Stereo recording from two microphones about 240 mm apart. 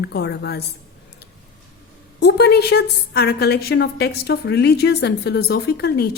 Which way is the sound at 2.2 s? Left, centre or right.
Left.